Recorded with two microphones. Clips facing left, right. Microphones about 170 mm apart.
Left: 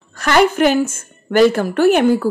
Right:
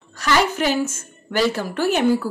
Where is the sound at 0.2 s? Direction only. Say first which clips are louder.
Left 6 dB; 55° left (ahead or behind).